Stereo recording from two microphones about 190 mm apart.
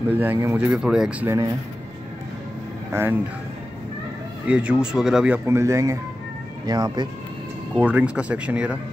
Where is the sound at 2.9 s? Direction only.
10° right (ahead or behind).